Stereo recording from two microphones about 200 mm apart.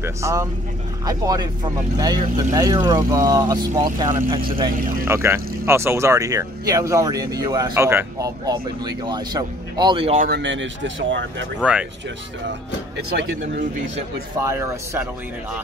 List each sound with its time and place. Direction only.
0.0 s speech: 15° right (ahead or behind)
5.0 s speech: 10° right (ahead or behind)
10.1 s speech: 45° right (ahead or behind)
10.4 s speech: 65° right (ahead or behind)
14.4 s speech: 15° right (ahead or behind)